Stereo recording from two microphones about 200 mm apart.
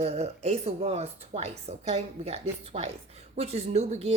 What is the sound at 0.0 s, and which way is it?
Speech, 35° right (ahead or behind).